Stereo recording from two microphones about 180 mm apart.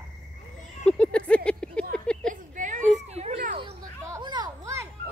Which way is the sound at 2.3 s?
45° right (ahead or behind).